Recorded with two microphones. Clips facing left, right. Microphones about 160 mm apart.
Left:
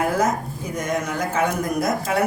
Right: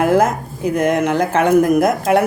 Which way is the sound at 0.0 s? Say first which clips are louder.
Right 7 dB; 70° right (ahead or behind).